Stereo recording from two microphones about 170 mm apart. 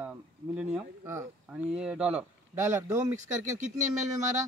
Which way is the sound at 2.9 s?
45° right (ahead or behind).